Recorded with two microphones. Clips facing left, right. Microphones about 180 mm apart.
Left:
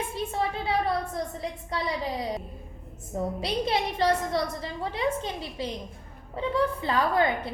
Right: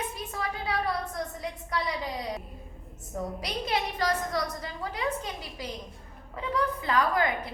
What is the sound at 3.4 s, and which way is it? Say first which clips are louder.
A woman's voice: left 3 dB; 25° left (ahead or behind).